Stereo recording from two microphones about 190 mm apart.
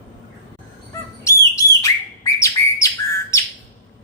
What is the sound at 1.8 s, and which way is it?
Bird, 15° left (ahead or behind).